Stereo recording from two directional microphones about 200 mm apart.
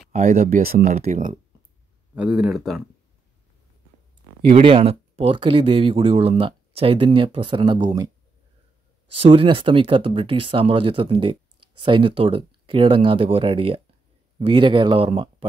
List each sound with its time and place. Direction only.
0.1 s speech: 40° right (ahead or behind)
0.9 s speech: 35° right (ahead or behind)
2.1 s speech: 5° right (ahead or behind)
4.4 s speech: 30° right (ahead or behind)
9.2 s speech: 25° right (ahead or behind)